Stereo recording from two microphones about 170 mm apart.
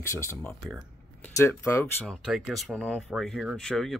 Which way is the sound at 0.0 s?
15° left (ahead or behind).